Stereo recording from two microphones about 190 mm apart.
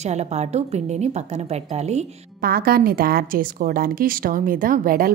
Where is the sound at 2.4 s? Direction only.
50° right (ahead or behind).